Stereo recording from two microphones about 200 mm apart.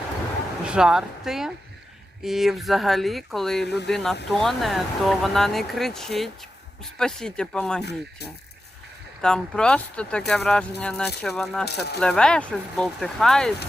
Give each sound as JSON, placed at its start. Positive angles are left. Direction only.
{"t": 0.6, "sound": "speech", "side_deg": -5}
{"t": 9.2, "sound": "speech", "side_deg": 5}
{"t": 11.6, "sound": "speech", "side_deg": 55}
{"t": 11.9, "sound": "speech", "side_deg": 5}